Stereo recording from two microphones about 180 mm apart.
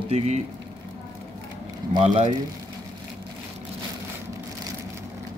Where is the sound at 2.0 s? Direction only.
40° right (ahead or behind).